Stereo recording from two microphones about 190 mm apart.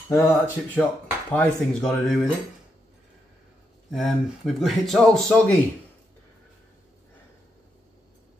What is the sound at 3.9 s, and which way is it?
Speech, centre (ahead or behind).